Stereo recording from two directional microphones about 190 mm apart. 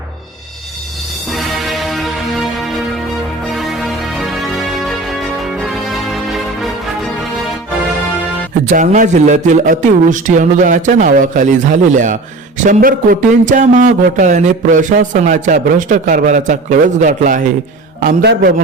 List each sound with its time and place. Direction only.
1.3 s music: centre (ahead or behind)
3.5 s music: centre (ahead or behind)
8.7 s speech: 40° right (ahead or behind)
18.0 s a man's voice: 55° right (ahead or behind)